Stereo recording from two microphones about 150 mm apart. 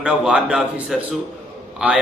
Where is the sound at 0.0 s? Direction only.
5° right (ahead or behind).